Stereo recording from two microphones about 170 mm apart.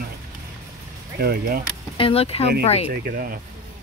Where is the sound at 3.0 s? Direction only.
60° right (ahead or behind).